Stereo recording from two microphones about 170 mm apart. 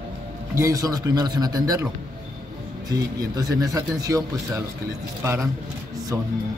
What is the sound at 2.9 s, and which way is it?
A man's voice, 20° right (ahead or behind).